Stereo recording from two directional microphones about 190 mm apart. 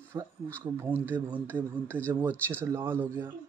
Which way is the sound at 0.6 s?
10° right (ahead or behind).